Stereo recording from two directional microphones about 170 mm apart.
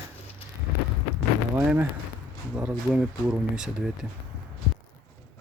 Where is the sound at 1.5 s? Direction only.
10° right (ahead or behind).